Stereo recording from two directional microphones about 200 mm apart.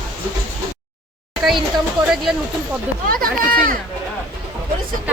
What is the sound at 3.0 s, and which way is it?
Speech, 45° right (ahead or behind).